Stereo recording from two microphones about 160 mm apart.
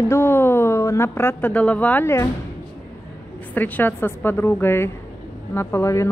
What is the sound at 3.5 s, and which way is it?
Speech, 10° left (ahead or behind).